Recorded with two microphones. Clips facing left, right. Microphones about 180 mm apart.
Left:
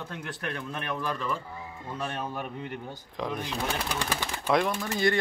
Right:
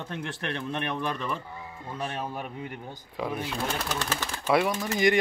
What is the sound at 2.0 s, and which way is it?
Speech, 10° right (ahead or behind).